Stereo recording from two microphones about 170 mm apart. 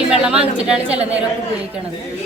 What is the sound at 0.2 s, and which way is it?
A woman's voice, 5° right (ahead or behind).